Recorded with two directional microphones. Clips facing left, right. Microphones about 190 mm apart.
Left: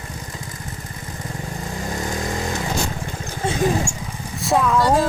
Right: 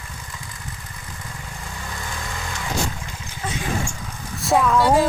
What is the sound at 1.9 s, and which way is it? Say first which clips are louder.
Vehicle: left 8 dB; 40° left (ahead or behind).